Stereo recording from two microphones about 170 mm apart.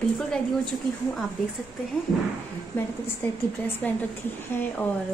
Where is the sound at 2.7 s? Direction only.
10° left (ahead or behind).